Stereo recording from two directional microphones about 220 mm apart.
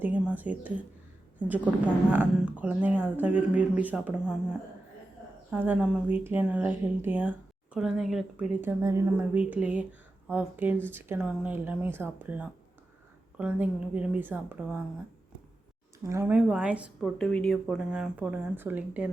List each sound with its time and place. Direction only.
0.0 s speech: 5° right (ahead or behind)
5.5 s a woman's voice: 5° right (ahead or behind)
16.0 s a woman's voice: 10° right (ahead or behind)